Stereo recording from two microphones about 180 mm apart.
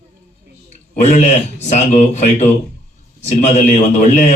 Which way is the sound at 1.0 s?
40° left (ahead or behind).